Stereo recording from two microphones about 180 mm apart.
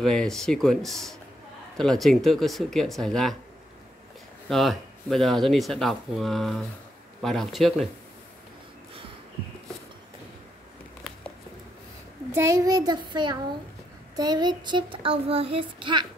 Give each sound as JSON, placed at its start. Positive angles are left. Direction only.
{"t": 0.0, "sound": "speech", "side_deg": 5}
{"t": 4.5, "sound": "speech", "side_deg": 0}
{"t": 12.4, "sound": "child singing", "side_deg": -15}